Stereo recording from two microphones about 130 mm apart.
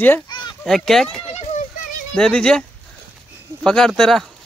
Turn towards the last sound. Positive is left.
turn(degrees=0)  # may be behind; listen again after turning